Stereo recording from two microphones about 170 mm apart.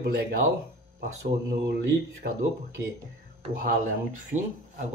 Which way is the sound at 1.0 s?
65° right (ahead or behind).